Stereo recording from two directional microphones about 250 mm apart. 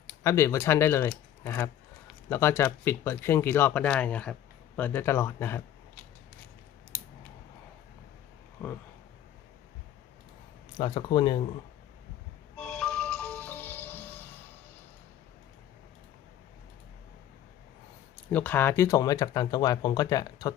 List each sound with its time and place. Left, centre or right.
0.2 s speech: centre
10.8 s speech: centre
12.5 s music: centre
18.3 s speech: centre